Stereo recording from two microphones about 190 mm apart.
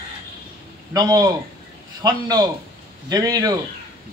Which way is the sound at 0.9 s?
20° right (ahead or behind).